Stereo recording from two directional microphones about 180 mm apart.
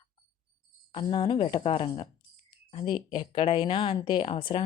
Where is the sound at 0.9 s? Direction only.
30° left (ahead or behind).